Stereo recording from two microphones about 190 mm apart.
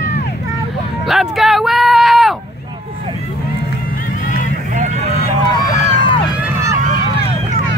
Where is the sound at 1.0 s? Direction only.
Centre (ahead or behind).